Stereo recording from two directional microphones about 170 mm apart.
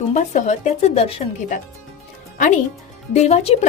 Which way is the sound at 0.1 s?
45° left (ahead or behind).